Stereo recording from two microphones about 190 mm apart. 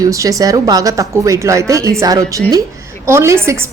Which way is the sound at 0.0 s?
15° right (ahead or behind).